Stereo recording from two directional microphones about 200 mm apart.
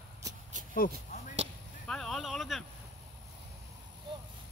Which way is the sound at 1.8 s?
Centre (ahead or behind).